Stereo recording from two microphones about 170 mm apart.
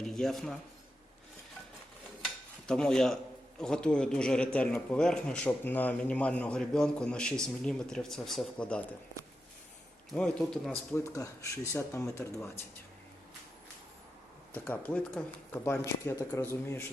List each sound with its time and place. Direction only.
0.0 s speech: centre (ahead or behind)
2.2 s a sound: 5° left (ahead or behind)
3.6 s speech: 5° left (ahead or behind)
10.2 s speech: 5° left (ahead or behind)
11.0 s speech: 20° left (ahead or behind)
14.5 s speech: 10° left (ahead or behind)